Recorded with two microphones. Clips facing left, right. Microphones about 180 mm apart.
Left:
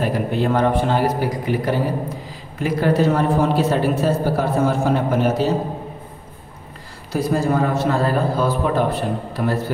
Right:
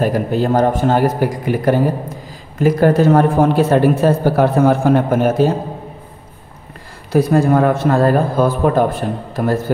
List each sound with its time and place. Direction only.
0.0 s speech: 40° right (ahead or behind)
7.1 s speech: 60° right (ahead or behind)